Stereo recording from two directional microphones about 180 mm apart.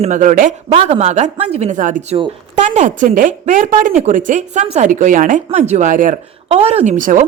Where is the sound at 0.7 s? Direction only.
35° right (ahead or behind).